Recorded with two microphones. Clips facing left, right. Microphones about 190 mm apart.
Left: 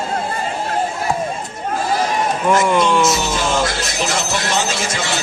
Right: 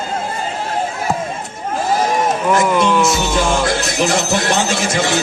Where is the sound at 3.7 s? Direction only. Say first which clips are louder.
Right 5 dB; 55° right (ahead or behind).